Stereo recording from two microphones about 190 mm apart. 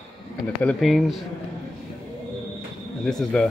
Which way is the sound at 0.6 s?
5° left (ahead or behind).